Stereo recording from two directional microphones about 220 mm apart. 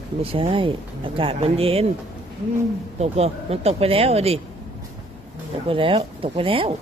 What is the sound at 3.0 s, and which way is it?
Speech, 30° right (ahead or behind).